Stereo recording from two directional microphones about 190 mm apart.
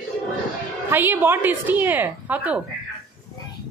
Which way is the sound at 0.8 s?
10° right (ahead or behind).